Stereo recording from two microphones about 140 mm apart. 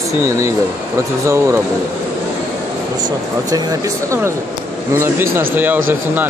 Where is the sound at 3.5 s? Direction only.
25° right (ahead or behind).